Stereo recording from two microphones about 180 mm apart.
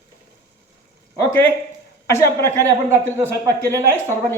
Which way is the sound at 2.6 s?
15° right (ahead or behind).